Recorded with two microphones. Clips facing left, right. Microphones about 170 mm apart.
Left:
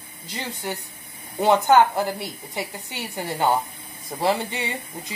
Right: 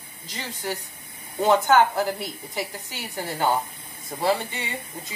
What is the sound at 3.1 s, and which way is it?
A woman's voice, 15° left (ahead or behind).